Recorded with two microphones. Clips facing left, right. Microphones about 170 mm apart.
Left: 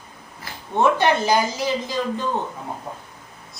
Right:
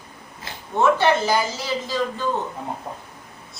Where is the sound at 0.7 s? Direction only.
15° left (ahead or behind).